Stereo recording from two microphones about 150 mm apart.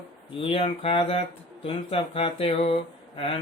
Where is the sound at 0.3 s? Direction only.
40° left (ahead or behind).